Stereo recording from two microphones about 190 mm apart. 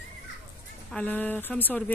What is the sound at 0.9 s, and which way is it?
Speech, 5° left (ahead or behind).